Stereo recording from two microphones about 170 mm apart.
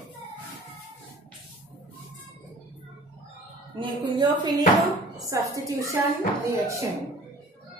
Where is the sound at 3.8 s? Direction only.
25° right (ahead or behind).